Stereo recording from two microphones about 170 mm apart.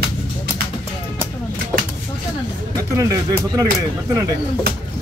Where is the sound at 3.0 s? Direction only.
20° right (ahead or behind).